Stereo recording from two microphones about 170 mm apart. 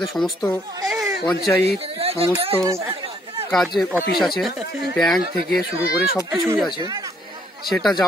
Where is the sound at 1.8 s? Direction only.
35° right (ahead or behind).